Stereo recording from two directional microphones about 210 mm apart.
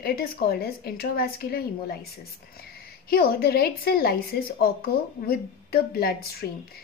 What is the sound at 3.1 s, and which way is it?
A woman's voice, 50° left (ahead or behind).